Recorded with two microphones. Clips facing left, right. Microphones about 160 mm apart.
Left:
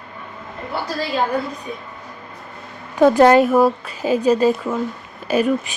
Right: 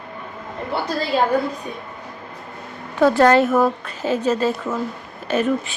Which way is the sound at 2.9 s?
15° left (ahead or behind).